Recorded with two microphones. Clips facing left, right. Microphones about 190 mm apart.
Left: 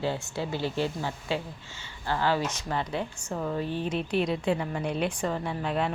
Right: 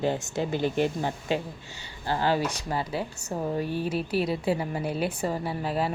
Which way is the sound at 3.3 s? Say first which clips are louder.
Right 2 dB; 20° right (ahead or behind).